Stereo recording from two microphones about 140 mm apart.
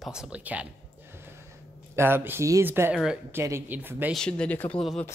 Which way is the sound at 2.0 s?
15° right (ahead or behind).